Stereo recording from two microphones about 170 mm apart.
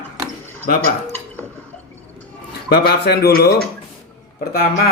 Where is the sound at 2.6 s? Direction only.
70° left (ahead or behind).